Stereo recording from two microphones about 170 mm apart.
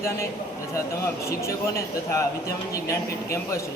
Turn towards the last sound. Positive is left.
turn(degrees=15)  # may be behind; listen again after turning